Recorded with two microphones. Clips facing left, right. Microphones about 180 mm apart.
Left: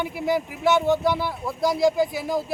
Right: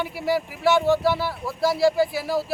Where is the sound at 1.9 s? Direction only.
5° right (ahead or behind).